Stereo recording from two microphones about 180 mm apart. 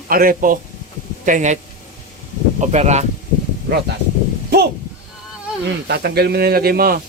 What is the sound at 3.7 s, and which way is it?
Speech, 65° right (ahead or behind).